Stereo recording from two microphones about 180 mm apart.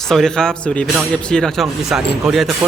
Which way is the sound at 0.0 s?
5° left (ahead or behind).